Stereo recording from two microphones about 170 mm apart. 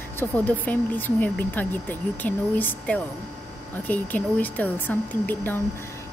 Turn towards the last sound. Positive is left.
turn(degrees=10)  # may be behind; listen again after turning